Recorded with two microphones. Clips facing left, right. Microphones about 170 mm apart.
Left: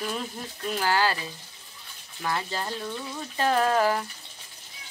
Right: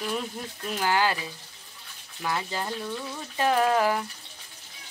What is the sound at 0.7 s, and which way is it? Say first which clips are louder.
Speech: even; 15° right (ahead or behind).